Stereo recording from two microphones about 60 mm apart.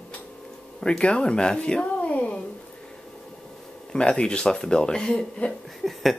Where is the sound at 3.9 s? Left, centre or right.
Centre.